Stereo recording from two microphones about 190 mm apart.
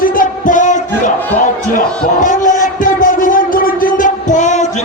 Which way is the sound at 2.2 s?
45° left (ahead or behind).